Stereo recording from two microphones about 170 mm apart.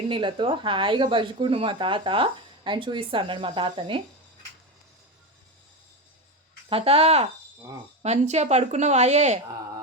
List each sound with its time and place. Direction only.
0.1 s speech: 30° right (ahead or behind)
6.7 s a woman's voice: 35° right (ahead or behind)